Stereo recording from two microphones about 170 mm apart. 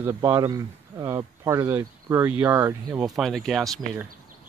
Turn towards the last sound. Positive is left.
turn(degrees=0)  # may be behind; listen again after turning